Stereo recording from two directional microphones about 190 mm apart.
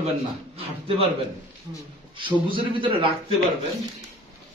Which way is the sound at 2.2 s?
25° right (ahead or behind).